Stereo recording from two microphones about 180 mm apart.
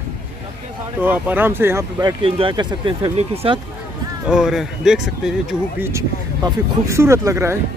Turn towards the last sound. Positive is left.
turn(degrees=-15)  # may be behind; listen again after turning